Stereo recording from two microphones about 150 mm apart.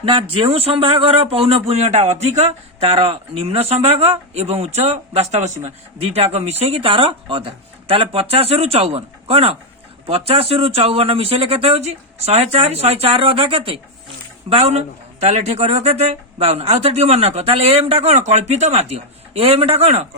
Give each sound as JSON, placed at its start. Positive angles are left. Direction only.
{"t": 0.0, "sound": "speech", "side_deg": -35}